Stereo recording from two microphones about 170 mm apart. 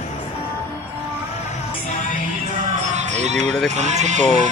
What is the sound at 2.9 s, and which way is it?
Music, 45° right (ahead or behind).